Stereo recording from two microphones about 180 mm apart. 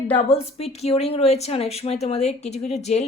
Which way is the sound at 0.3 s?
35° left (ahead or behind).